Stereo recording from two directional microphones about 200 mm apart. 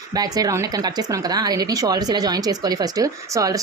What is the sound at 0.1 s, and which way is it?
Speech, 20° right (ahead or behind).